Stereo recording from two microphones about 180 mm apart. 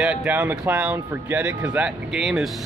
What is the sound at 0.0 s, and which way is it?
Speech, 5° right (ahead or behind).